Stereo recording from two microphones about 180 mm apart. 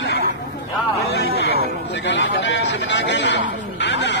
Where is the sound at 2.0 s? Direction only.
80° left.